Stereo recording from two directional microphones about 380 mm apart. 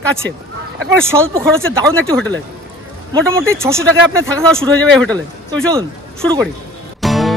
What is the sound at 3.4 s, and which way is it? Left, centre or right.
Speech, centre.